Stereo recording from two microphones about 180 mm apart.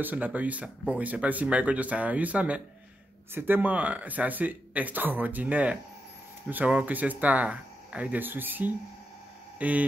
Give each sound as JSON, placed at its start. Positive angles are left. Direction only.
{"t": 0.0, "sound": "speech", "side_deg": -10}